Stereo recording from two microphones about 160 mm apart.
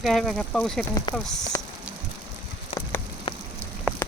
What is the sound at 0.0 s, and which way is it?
Speech, centre (ahead or behind).